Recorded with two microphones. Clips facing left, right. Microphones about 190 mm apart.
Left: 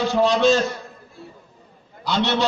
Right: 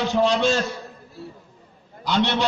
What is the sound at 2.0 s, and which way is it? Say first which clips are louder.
Speech: even; 15° right (ahead or behind).